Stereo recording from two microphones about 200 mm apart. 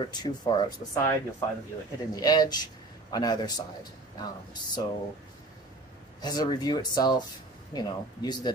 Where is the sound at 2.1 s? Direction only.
20° left (ahead or behind).